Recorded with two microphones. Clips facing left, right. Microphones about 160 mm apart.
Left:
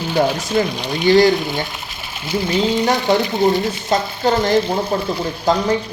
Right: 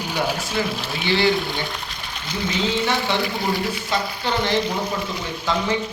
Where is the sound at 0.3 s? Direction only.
10° right (ahead or behind).